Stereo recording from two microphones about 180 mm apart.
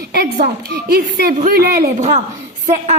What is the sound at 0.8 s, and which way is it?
Speech, 60° right (ahead or behind).